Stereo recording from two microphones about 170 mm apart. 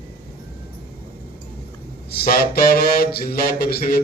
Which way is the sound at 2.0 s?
60° left (ahead or behind).